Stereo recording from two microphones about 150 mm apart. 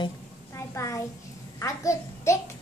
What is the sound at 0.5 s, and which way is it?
A child's voice, 20° left (ahead or behind).